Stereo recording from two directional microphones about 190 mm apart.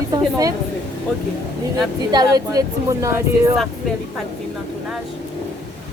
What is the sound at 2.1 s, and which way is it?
Speech, 20° right (ahead or behind).